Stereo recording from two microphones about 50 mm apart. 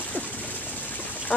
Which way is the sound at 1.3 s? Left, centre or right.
Left.